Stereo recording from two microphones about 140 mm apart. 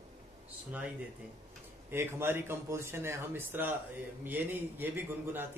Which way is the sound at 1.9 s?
15° right (ahead or behind).